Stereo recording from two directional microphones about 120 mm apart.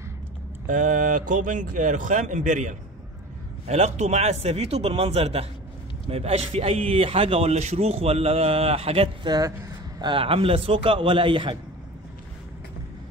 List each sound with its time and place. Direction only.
0.7 s speech: 90° right
3.6 s a man's voice: 65° right (ahead or behind); by 11.5 s 45° right (ahead or behind)